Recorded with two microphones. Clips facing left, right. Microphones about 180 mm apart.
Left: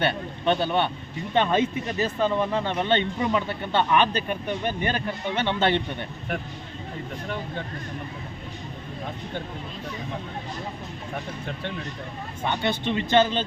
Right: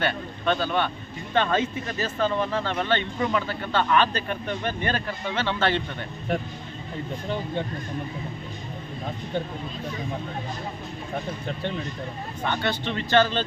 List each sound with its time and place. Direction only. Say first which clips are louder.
0.0 s speech: left 2 dB; 20° left (ahead or behind)
12.5 s speech: left 2 dB; 20° left (ahead or behind)